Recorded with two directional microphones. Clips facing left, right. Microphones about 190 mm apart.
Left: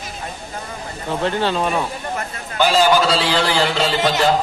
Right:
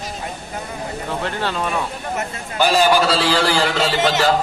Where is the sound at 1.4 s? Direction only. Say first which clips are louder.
Left 4 dB; 25° left (ahead or behind).